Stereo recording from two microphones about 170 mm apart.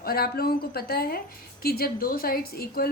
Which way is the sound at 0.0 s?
65° left (ahead or behind).